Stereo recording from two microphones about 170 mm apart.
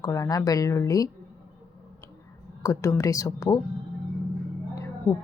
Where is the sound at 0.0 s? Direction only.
20° left (ahead or behind).